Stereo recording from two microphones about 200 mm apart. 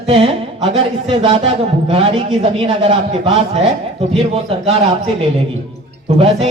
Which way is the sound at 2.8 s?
30° right (ahead or behind).